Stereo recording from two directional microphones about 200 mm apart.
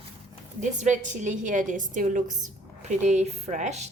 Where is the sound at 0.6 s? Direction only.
35° right (ahead or behind).